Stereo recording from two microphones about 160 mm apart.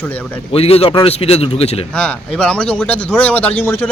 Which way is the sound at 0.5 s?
40° left (ahead or behind).